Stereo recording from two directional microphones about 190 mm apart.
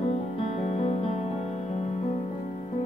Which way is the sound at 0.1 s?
35° left (ahead or behind).